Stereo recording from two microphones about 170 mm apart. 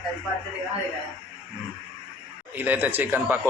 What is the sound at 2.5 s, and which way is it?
Speech, 10° right (ahead or behind).